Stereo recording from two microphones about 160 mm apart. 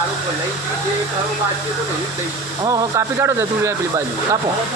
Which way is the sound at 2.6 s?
25° right (ahead or behind).